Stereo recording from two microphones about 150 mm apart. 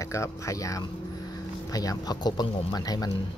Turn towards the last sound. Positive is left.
turn(degrees=25)  # may be behind; listen again after turning